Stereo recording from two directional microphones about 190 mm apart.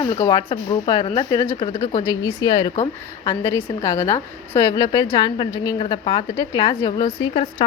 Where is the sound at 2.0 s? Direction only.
20° left (ahead or behind).